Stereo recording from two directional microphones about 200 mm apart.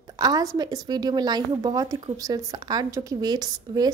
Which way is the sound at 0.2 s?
20° right (ahead or behind).